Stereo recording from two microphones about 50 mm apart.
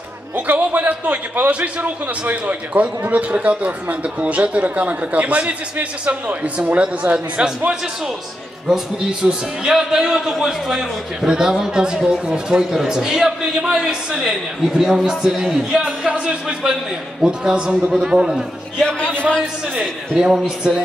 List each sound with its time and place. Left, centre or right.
0.5 s a man's voice: right; by 15.8 s centre
16.1 s a man's voice: centre
18.9 s a man's voice: left
20.2 s a man's voice: centre